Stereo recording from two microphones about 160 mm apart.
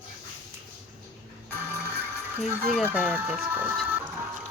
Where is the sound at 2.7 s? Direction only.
10° right (ahead or behind).